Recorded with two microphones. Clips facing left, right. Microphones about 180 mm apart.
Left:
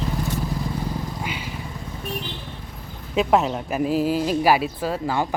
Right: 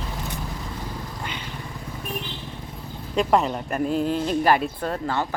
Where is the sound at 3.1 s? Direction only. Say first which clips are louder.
Left 1 dB; 5° left (ahead or behind).